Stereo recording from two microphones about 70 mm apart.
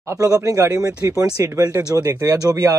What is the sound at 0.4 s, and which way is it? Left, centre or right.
Speech, right.